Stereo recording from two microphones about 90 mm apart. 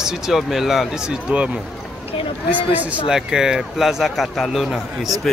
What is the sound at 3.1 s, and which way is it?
A man's voice, 5° right (ahead or behind).